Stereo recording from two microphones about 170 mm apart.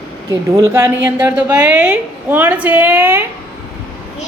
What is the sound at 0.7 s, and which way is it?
A woman's voice, 15° right (ahead or behind).